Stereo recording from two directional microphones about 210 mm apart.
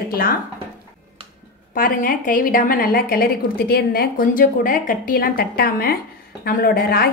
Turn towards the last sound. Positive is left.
turn(degrees=45)  # may be behind; listen again after turning